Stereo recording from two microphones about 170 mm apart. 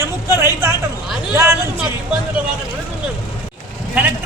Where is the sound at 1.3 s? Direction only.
15° right (ahead or behind).